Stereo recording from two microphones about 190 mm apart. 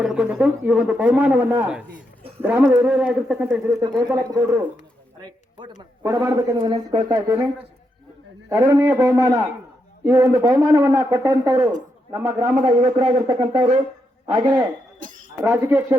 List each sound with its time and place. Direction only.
0.0 s a man's voice: 5° right (ahead or behind); by 7.4 s 20° right (ahead or behind)
8.4 s a man's voice: 15° right (ahead or behind)
12.6 s speech: 25° right (ahead or behind)
14.9 s a sound: 45° right (ahead or behind)
15.4 s a man's voice: 10° right (ahead or behind)